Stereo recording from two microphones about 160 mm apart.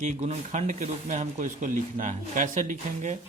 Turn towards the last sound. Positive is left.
turn(degrees=-50)  # may be behind; listen again after turning